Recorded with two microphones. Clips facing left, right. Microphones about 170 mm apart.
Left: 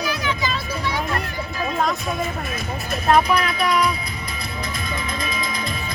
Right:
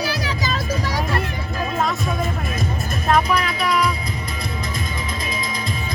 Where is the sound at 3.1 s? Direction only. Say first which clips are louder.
Left 1 dB; centre (ahead or behind).